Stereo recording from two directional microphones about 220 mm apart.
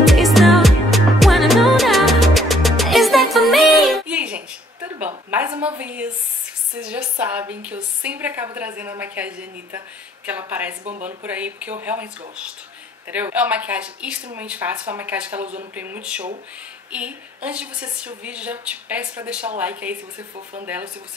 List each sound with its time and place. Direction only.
0.0 s music: centre (ahead or behind)
4.8 s a sound: 10° right (ahead or behind)
6.8 s a woman's voice: 5° right (ahead or behind)
10.8 s speech: 35° right (ahead or behind)
11.2 s a woman's voice: 5° right (ahead or behind)